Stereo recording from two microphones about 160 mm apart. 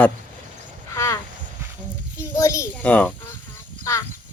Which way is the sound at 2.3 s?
20° left (ahead or behind).